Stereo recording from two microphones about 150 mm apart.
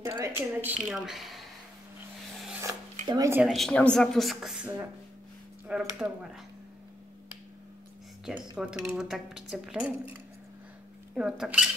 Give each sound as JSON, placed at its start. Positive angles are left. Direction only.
{"t": 0.0, "sound": "speech", "side_deg": -15}
{"t": 0.8, "sound": "speech", "side_deg": -5}
{"t": 3.1, "sound": "speech", "side_deg": -25}
{"t": 3.3, "sound": "speech", "side_deg": 0}
{"t": 8.5, "sound": "speech", "side_deg": -5}